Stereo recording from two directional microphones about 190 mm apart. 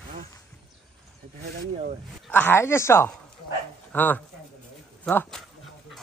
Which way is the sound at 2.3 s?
10° left (ahead or behind).